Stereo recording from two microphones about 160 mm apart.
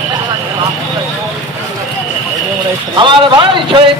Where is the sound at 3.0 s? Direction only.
30° right (ahead or behind).